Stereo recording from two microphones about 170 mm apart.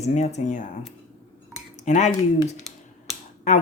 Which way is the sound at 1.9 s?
45° left (ahead or behind).